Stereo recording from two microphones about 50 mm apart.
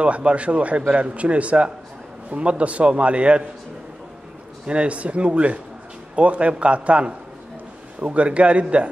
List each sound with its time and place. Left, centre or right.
0.0 s a man's voice: right
4.6 s a man's voice: right